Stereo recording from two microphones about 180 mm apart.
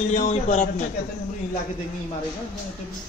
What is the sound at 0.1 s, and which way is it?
Speech, 40° left (ahead or behind).